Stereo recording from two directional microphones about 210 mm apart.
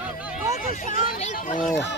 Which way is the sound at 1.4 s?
40° left (ahead or behind).